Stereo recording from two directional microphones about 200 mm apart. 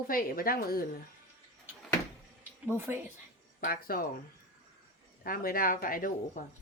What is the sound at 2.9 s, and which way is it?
Speech, 10° right (ahead or behind).